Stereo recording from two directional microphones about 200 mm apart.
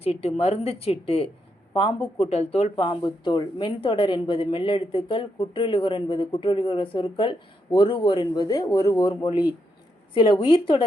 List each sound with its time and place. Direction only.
0.0 s a woman's voice: 30° left (ahead or behind)
10.5 s speech: 25° left (ahead or behind)